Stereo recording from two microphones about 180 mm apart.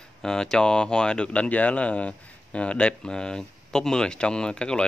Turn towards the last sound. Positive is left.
turn(degrees=5)  # may be behind; listen again after turning